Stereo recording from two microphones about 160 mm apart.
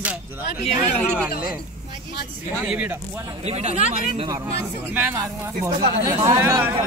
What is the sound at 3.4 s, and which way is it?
Speech, 40° right (ahead or behind).